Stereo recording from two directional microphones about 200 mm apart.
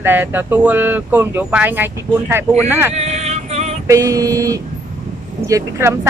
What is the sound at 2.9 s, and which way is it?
Female singing, 35° right (ahead or behind).